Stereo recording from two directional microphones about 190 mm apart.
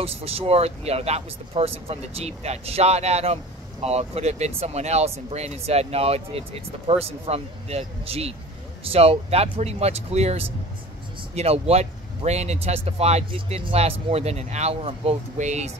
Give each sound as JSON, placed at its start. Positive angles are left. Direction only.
{"t": 0.0, "sound": "speech", "side_deg": -30}